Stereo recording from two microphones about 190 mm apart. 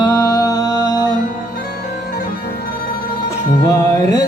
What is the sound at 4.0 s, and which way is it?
Music, 20° left (ahead or behind).